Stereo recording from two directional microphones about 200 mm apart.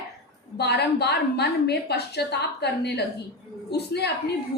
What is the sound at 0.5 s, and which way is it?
A woman's voice, 55° left (ahead or behind).